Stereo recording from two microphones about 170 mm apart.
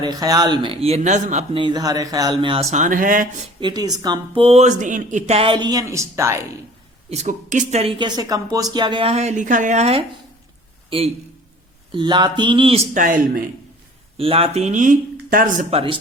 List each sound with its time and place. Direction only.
0.0 s speech: 25° right (ahead or behind); by 1.5 s 45° right (ahead or behind)
1.5 s speech: 25° right (ahead or behind); by 3.2 s 50° right (ahead or behind)
3.6 s speech: 25° right (ahead or behind)
7.1 s a man's voice: 45° right (ahead or behind)
14.2 s speech: 35° right (ahead or behind); by 15.6 s 50° right (ahead or behind)
15.7 s speech: 30° right (ahead or behind)